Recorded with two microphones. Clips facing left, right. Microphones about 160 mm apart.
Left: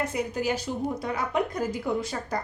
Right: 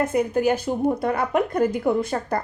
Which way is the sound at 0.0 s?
50° right (ahead or behind).